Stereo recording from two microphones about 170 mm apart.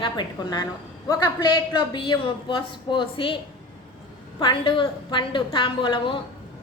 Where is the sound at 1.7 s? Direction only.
25° left (ahead or behind).